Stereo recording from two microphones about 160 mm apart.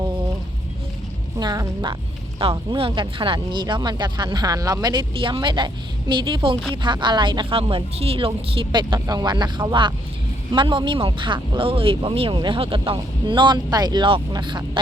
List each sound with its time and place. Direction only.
1.4 s speech: 25° right (ahead or behind)